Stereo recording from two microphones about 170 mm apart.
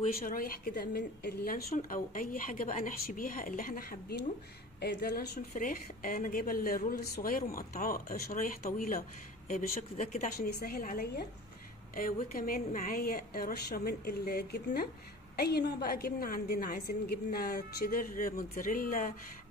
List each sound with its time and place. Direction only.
0.2 s a woman's voice: 60° left (ahead or behind)
5.5 s a woman's voice: 50° left (ahead or behind)